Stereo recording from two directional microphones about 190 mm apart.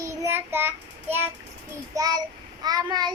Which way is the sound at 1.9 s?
20° right (ahead or behind).